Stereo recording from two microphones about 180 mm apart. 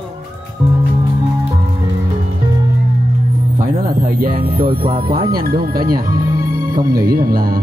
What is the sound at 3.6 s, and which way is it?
Music, 55° right (ahead or behind).